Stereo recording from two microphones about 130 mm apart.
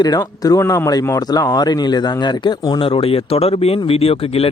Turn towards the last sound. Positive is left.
turn(degrees=45)  # may be behind; listen again after turning